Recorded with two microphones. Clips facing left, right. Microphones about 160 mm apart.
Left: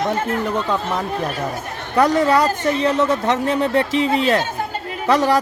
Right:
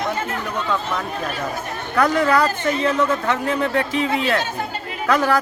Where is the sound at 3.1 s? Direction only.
20° left (ahead or behind).